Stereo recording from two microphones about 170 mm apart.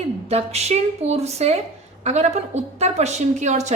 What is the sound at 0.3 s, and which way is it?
A woman's voice, 40° right (ahead or behind).